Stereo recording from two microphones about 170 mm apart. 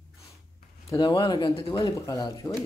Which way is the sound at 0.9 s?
25° left (ahead or behind).